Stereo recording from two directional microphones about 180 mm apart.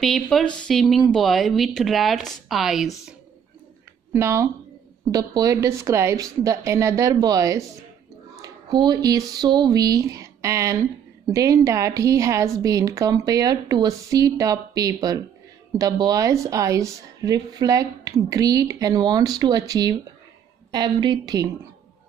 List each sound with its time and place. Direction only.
0.0 s speech: centre (ahead or behind)
4.1 s a woman's voice: 15° right (ahead or behind)